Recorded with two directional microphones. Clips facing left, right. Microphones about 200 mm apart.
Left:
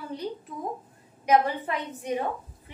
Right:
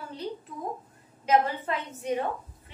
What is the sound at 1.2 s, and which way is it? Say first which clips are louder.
Speech: left 2 dB; 15° left (ahead or behind).